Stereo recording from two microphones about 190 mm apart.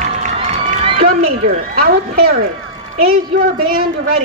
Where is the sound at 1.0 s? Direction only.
50° right (ahead or behind).